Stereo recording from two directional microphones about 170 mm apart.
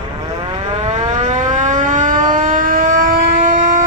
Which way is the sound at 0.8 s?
45° right (ahead or behind).